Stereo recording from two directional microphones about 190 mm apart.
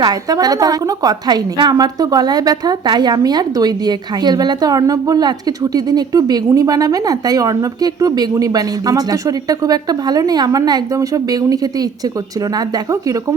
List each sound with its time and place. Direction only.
0.0 s a woman's voice: 20° right (ahead or behind)